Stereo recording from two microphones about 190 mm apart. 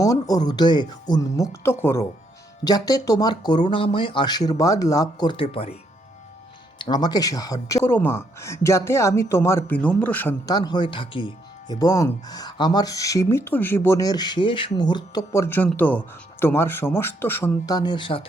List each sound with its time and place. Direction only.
0.0 s speech: 20° left (ahead or behind)
6.7 s speech: 25° left (ahead or behind)
10.5 s speech: 20° left (ahead or behind)